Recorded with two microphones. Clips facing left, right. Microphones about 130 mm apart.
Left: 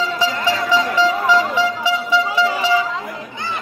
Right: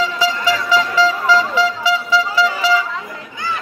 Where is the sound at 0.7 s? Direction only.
20° left (ahead or behind).